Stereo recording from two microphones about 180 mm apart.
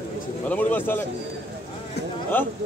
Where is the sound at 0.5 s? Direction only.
10° left (ahead or behind).